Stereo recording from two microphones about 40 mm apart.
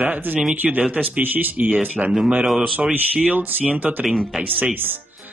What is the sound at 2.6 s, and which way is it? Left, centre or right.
Speech, right.